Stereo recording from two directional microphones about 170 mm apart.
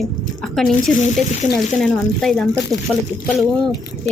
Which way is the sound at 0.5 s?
Centre (ahead or behind).